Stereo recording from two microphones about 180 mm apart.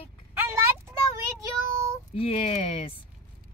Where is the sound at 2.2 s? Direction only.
35° left (ahead or behind).